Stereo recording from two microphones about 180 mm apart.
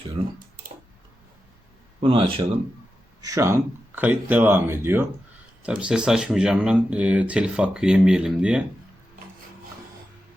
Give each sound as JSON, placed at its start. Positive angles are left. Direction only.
{"t": 0.2, "sound": "speech", "side_deg": -30}
{"t": 2.0, "sound": "speech", "side_deg": -30}
{"t": 3.2, "sound": "speech", "side_deg": -20}